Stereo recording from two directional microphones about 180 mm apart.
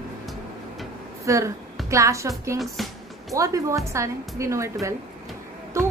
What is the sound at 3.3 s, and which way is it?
A woman's voice, 20° right (ahead or behind).